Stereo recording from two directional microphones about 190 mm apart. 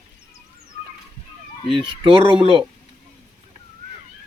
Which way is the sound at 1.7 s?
25° right (ahead or behind).